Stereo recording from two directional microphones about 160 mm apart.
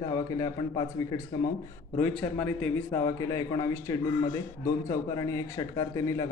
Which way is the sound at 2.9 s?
20° left (ahead or behind).